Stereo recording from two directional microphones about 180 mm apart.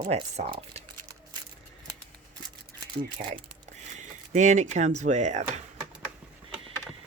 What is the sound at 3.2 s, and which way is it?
Speech, 45° right (ahead or behind).